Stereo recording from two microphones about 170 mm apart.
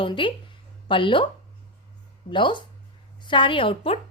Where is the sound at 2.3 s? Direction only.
30° left (ahead or behind).